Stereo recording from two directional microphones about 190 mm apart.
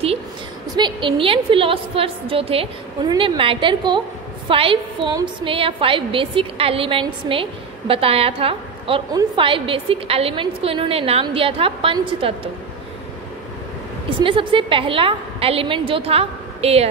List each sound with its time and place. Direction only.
0.7 s a woman's voice: 25° right (ahead or behind)
14.2 s a woman's voice: 25° right (ahead or behind)